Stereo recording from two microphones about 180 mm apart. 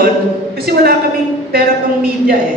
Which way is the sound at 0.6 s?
60° right (ahead or behind).